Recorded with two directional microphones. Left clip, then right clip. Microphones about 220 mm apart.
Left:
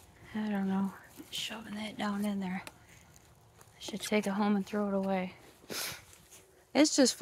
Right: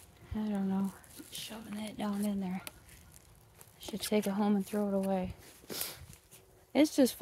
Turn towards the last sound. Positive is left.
turn(degrees=-10)  # may be behind; listen again after turning